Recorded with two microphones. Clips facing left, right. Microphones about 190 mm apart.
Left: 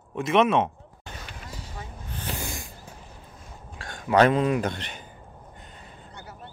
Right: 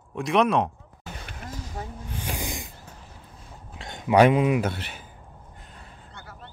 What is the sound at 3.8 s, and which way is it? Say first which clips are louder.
Speech: right 2 dB; 20° right (ahead or behind).